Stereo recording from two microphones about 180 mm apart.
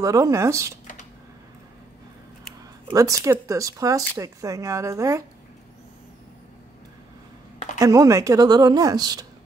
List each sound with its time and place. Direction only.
0.0 s speech: 20° right (ahead or behind)
2.9 s a woman's voice: 20° right (ahead or behind)
7.8 s a woman's voice: 20° right (ahead or behind)